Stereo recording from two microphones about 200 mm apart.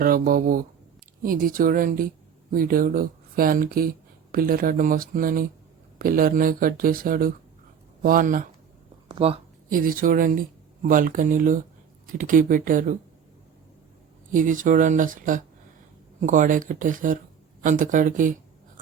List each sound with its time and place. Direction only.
0.0 s speech: 45° right (ahead or behind)
9.0 s a sound: 30° right (ahead or behind)
9.6 s speech: 45° right (ahead or behind)
14.3 s speech: 40° right (ahead or behind)